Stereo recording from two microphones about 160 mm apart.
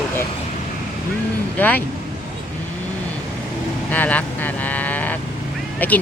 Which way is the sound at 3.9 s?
10° left (ahead or behind).